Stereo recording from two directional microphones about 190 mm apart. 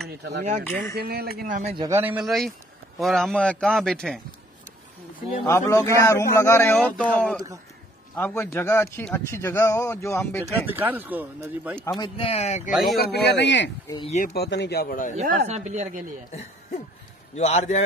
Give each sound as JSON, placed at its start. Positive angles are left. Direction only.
{"t": 0.2, "sound": "a man's voice", "side_deg": -60}
{"t": 1.8, "sound": "a man's voice", "side_deg": -15}
{"t": 5.4, "sound": "a man's voice", "side_deg": 15}
{"t": 10.4, "sound": "speech", "side_deg": -10}
{"t": 12.0, "sound": "speech", "side_deg": 30}
{"t": 13.0, "sound": "a man's voice", "side_deg": 60}
{"t": 14.0, "sound": "speech", "side_deg": 40}
{"t": 14.3, "sound": "a man's voice", "side_deg": 60}
{"t": 15.1, "sound": "a woman's voice", "side_deg": -40}
{"t": 17.4, "sound": "speech", "side_deg": 35}